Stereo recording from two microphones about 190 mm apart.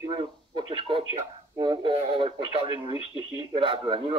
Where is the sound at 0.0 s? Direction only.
25° right (ahead or behind).